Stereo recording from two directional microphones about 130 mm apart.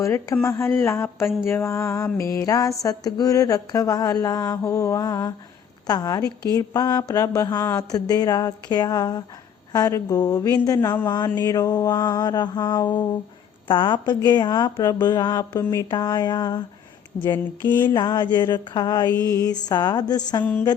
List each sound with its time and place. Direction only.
0.0 s speech: 25° left (ahead or behind)
10.8 s speech: 15° left (ahead or behind)
11.3 s a woman's voice: 30° left (ahead or behind)
17.6 s speech: 15° left (ahead or behind)
17.8 s a woman's voice: 35° left (ahead or behind)